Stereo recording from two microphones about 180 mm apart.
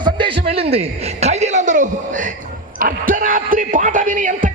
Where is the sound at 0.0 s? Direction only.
30° right (ahead or behind); by 2.3 s 45° right (ahead or behind).